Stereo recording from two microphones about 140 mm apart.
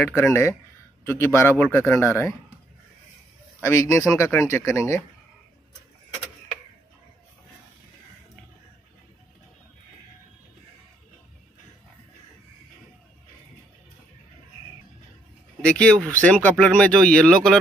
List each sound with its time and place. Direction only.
0.2 s speech: 20° left (ahead or behind)
3.6 s speech: 20° left (ahead or behind)
15.6 s speech: 5° left (ahead or behind)